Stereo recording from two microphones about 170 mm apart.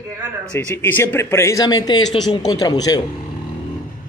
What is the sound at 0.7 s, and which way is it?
Speech, 10° left (ahead or behind).